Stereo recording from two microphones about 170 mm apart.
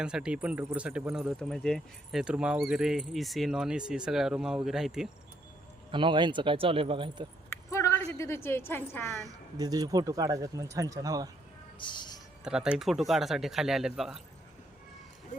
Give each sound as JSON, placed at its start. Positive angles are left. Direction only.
{"t": 0.0, "sound": "speech", "side_deg": -5}
{"t": 5.9, "sound": "speech", "side_deg": -30}
{"t": 7.5, "sound": "a woman's voice", "side_deg": 15}
{"t": 9.6, "sound": "speech", "side_deg": -20}
{"t": 11.8, "sound": "speech", "side_deg": 25}
{"t": 12.5, "sound": "speech", "side_deg": -5}
{"t": 15.3, "sound": "a sound", "side_deg": 45}